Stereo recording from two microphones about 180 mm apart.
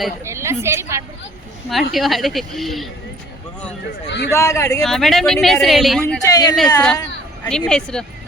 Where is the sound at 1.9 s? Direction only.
Centre (ahead or behind).